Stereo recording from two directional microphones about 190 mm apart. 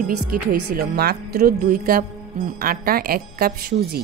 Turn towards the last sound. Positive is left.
turn(degrees=-55)  # may be behind; listen again after turning